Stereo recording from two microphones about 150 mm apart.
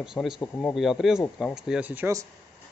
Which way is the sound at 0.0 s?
5° right (ahead or behind).